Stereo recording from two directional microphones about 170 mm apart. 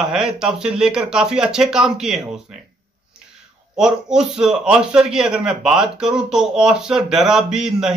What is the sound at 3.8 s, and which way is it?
A man's voice, 5° right (ahead or behind).